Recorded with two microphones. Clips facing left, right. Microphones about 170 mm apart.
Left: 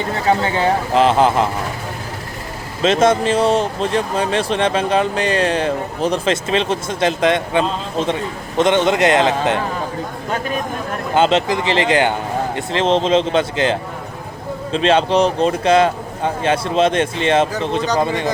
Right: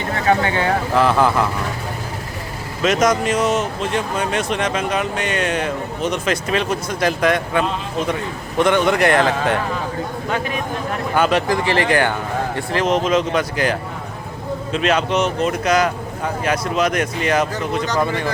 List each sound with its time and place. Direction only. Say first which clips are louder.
0.3 s speech: left 1 dB; 30° left (ahead or behind)
2.8 s speech: left 3 dB; 30° left (ahead or behind)
11.1 s speech: left 2 dB; 25° left (ahead or behind)